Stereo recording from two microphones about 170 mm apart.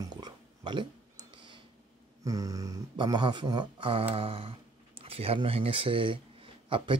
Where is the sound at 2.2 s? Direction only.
20° right (ahead or behind).